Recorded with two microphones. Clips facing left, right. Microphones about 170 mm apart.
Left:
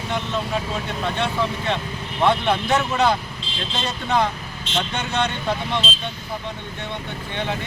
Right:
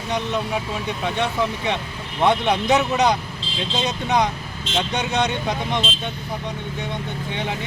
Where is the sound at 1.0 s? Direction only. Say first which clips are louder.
Right 1 dB; 15° right (ahead or behind).